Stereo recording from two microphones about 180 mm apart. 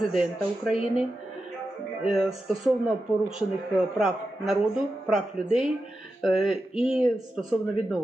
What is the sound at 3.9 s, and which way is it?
Speech, centre (ahead or behind).